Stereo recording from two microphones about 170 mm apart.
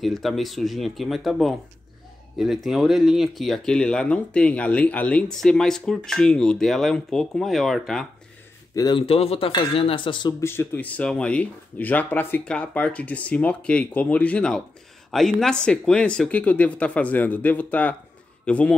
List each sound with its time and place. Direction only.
0.0 s speech: centre (ahead or behind)
8.7 s speech: 25° left (ahead or behind)
10.4 s speech: 15° left (ahead or behind)